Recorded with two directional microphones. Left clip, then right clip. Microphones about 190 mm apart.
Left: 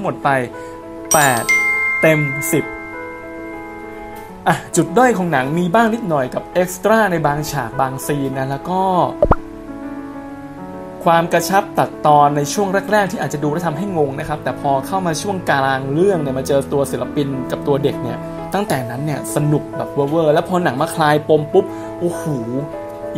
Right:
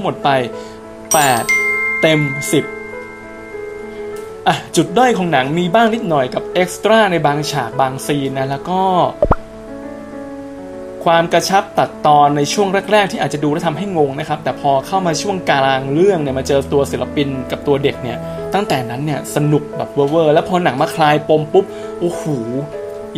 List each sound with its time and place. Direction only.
1.0 s speech: centre (ahead or behind)
4.5 s speech: 20° left (ahead or behind)
11.1 s speech: 20° left (ahead or behind)